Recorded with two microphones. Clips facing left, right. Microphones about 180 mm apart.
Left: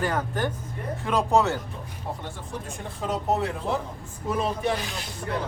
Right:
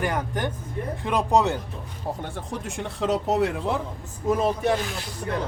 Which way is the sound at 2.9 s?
80° right.